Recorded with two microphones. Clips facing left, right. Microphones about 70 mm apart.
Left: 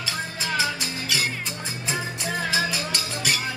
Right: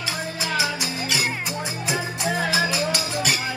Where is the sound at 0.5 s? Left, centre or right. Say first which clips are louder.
Right 1 dB; centre.